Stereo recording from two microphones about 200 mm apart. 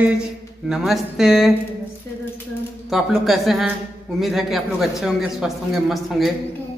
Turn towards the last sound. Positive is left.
turn(degrees=0)  # may be behind; listen again after turning